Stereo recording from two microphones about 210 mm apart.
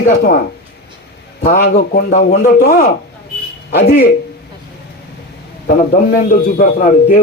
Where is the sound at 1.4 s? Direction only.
45° left (ahead or behind).